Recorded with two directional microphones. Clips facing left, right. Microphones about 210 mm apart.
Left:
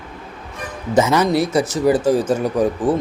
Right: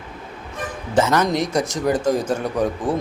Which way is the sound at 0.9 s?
10° left (ahead or behind).